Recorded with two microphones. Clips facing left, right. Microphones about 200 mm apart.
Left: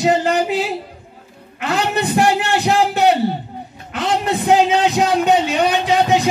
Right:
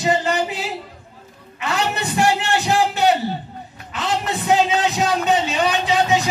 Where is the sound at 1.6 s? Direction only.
60° left (ahead or behind).